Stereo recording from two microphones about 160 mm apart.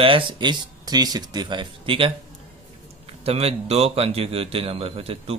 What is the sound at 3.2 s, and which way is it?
Speech, 40° right (ahead or behind).